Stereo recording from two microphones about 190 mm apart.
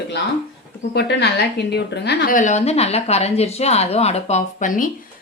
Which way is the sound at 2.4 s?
40° left (ahead or behind).